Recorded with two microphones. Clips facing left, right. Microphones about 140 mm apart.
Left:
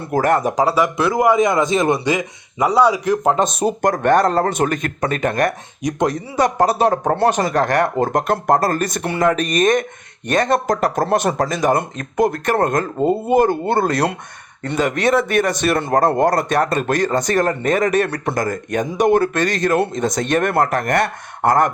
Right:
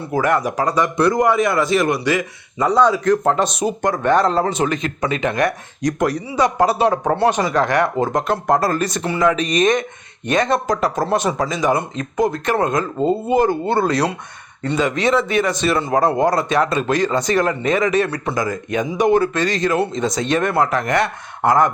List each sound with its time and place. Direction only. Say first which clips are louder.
0.2 s speech: left 1 dB; 40° left (ahead or behind)
0.6 s a man's voice: even; 5° left (ahead or behind)
3.8 s a man's voice: left 1 dB; 45° left (ahead or behind)
5.8 s speech: even; 20° left (ahead or behind)
6.1 s a man's voice: even; 45° left (ahead or behind)